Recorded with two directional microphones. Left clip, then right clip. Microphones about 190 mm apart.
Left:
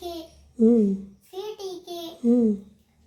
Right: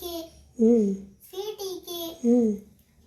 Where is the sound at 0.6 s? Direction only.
20° left (ahead or behind).